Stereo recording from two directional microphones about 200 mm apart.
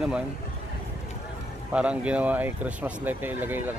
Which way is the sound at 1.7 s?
5° right (ahead or behind).